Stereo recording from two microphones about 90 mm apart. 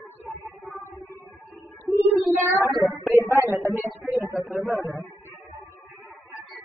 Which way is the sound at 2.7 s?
Centre (ahead or behind).